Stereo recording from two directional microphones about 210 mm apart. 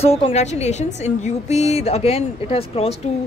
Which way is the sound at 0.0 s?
30° left (ahead or behind).